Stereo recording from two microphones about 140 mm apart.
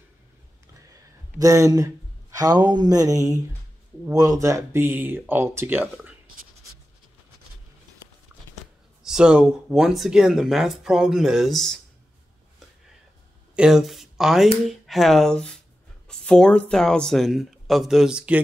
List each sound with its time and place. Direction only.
1.4 s speech: 25° right (ahead or behind)
9.0 s speech: 5° right (ahead or behind)
13.6 s speech: 5° right (ahead or behind)